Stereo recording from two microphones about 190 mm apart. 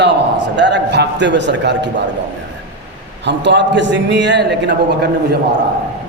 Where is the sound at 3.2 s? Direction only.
65° right (ahead or behind).